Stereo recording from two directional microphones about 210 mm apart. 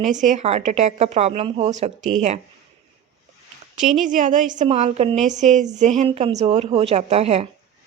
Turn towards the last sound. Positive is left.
turn(degrees=-30)  # may be behind; listen again after turning